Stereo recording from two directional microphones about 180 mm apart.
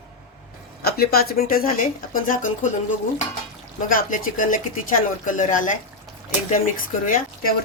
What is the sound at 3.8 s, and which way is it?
Speech, 50° left (ahead or behind).